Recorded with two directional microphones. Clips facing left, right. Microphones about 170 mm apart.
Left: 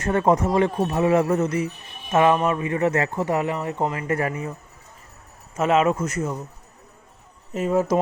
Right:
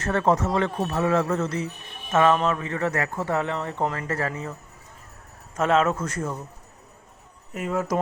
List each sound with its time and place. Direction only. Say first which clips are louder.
0.0 s speech: left 3 dB; 15° left (ahead or behind)
5.5 s speech: left 2 dB; 10° left (ahead or behind)
7.5 s speech: left 5 dB; 25° left (ahead or behind)